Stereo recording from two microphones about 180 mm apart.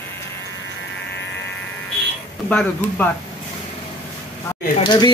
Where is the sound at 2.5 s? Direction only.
10° left (ahead or behind).